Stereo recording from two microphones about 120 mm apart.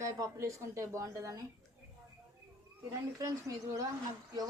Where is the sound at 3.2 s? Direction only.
25° right (ahead or behind).